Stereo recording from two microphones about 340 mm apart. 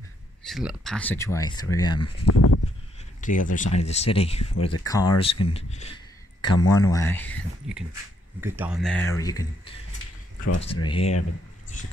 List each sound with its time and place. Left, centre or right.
0.5 s speech: centre
2.0 s speech: left
3.2 s speech: left
4.6 s speech: left
4.8 s speech: centre